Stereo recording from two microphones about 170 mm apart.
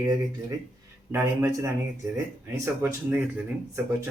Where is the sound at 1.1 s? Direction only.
15° right (ahead or behind).